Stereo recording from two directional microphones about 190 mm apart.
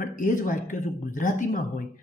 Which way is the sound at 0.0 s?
45° left (ahead or behind).